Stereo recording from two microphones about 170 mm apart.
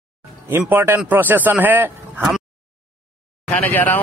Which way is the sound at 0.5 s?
15° right (ahead or behind).